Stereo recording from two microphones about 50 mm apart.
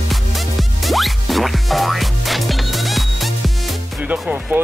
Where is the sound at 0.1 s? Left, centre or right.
Centre.